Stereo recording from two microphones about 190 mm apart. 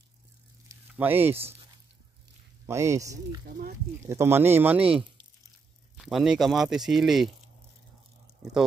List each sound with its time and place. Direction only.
0.7 s a sound: 10° right (ahead or behind)
2.6 s speech: 15° right (ahead or behind)
3.4 s speech: 50° right (ahead or behind)
4.1 s speech: 15° right (ahead or behind)